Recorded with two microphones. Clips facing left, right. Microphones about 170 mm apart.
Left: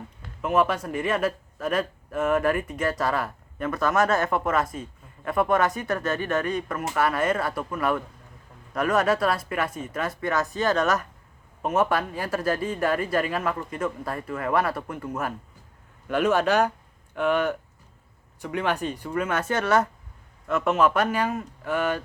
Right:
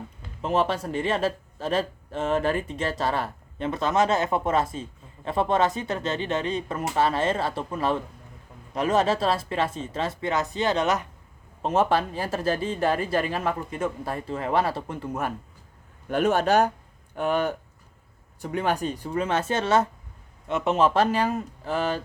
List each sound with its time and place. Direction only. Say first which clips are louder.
0.4 s a man's voice: left 1 dB; 30° right (ahead or behind)
16.0 s speech: even; 50° right (ahead or behind)
17.2 s speech: left 1 dB; 40° right (ahead or behind)